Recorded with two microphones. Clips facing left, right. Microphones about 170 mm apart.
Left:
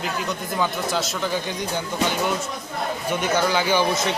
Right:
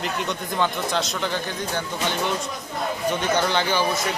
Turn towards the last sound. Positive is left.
turn(degrees=20)  # may be behind; listen again after turning